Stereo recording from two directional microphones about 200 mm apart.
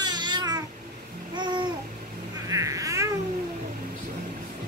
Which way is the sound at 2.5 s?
15° right (ahead or behind).